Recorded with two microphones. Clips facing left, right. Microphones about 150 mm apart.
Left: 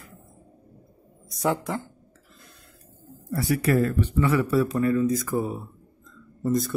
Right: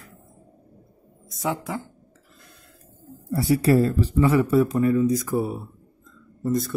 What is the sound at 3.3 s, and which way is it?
Speech, 25° right (ahead or behind).